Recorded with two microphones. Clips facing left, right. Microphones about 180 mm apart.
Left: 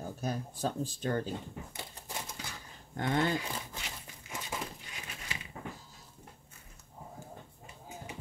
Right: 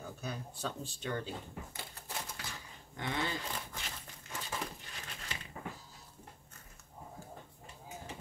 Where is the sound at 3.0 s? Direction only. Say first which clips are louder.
Left 7 dB; 50° left (ahead or behind).